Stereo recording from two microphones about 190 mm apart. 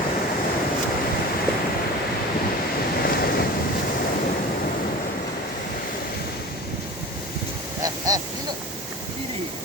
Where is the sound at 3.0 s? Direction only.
55° left (ahead or behind).